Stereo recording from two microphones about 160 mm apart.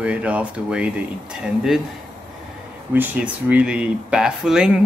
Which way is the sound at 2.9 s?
10° right (ahead or behind).